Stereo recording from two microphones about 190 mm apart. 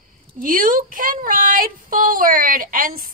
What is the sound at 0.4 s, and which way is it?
Speech, 45° right (ahead or behind).